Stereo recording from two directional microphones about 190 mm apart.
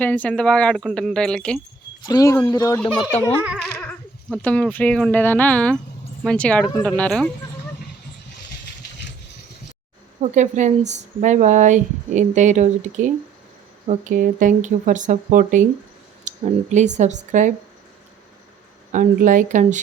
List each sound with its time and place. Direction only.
0.0 s speech: 10° left (ahead or behind)
2.0 s speech: 20° left (ahead or behind)
3.4 s speech: centre (ahead or behind)
10.2 s speech: 40° right (ahead or behind)
18.9 s speech: 45° right (ahead or behind)